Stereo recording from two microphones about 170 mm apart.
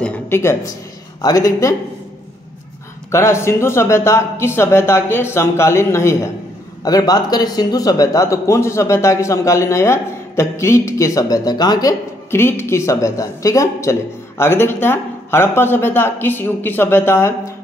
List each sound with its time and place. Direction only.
0.0 s speech: 10° left (ahead or behind)
3.1 s speech: 15° left (ahead or behind)